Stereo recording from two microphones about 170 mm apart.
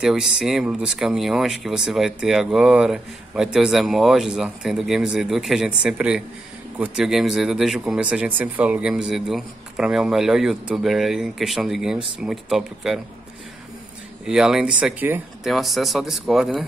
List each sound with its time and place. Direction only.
0.0 s speech: 5° right (ahead or behind)
14.2 s speech: 5° right (ahead or behind)